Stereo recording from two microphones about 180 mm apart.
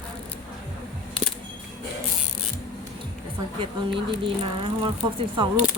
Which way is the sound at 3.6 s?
30° right (ahead or behind).